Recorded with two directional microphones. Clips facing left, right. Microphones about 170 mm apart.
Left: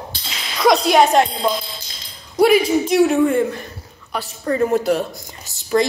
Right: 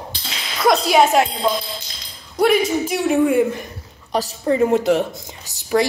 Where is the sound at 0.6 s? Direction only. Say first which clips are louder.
Left 1 dB; 5° right (ahead or behind).